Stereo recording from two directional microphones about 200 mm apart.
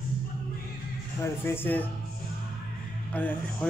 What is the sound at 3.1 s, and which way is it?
Speech, 10° left (ahead or behind).